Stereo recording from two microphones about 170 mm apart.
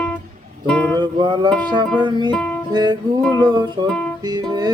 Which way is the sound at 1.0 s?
25° right (ahead or behind).